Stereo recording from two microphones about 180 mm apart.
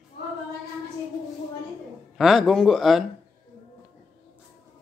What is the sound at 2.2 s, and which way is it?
Speech, centre (ahead or behind).